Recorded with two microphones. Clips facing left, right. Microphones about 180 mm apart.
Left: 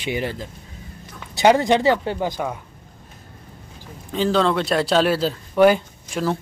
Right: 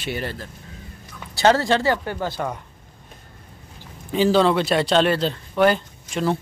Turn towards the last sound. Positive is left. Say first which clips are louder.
# right 1 dB
turn(degrees=0)  # may be behind; listen again after turning